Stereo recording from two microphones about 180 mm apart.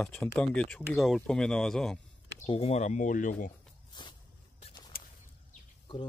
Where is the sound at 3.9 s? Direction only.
25° left (ahead or behind).